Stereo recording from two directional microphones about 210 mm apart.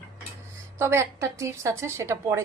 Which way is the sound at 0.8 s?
15° right (ahead or behind).